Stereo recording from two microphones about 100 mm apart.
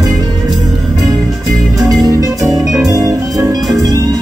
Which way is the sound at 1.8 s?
40° right (ahead or behind).